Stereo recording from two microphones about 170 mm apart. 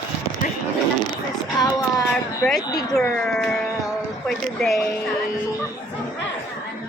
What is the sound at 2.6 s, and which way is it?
Speech, 20° left (ahead or behind).